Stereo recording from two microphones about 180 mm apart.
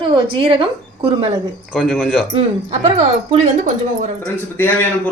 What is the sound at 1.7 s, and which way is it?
Speech, 5° left (ahead or behind).